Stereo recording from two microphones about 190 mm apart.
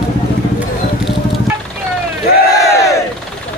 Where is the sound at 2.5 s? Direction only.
15° left (ahead or behind).